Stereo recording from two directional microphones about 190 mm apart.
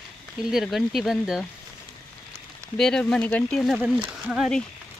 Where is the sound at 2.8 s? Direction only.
5° left (ahead or behind).